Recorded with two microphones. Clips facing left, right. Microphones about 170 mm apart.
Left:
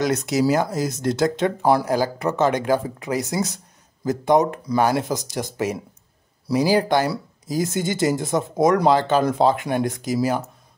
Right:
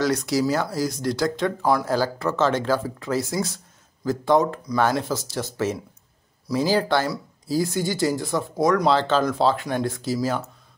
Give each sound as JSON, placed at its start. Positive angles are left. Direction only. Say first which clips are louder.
{"t": 0.0, "sound": "speech", "louder": "left 2 dB", "side_deg": 20}